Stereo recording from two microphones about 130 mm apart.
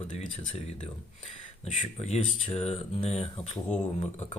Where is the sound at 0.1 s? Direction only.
65° left (ahead or behind).